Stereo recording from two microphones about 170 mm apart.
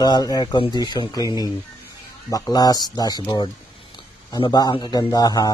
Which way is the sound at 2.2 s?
20° left (ahead or behind).